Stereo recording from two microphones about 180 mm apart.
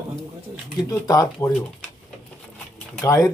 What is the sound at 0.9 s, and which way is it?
Speech, 20° left (ahead or behind).